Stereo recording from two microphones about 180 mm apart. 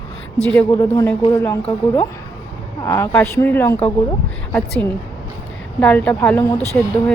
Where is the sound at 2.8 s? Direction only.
15° left (ahead or behind).